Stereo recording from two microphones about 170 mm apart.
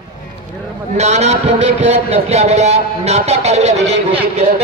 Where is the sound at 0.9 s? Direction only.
40° right (ahead or behind).